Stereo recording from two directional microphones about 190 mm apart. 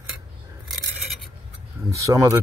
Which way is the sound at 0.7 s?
Centre (ahead or behind).